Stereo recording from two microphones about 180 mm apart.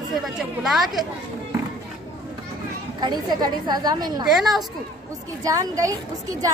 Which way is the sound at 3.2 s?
25° right (ahead or behind).